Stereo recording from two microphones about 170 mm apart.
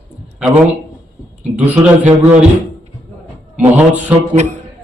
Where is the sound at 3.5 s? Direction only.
10° right (ahead or behind).